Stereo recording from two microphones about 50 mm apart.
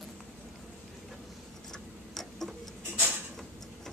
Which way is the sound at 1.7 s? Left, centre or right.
Centre.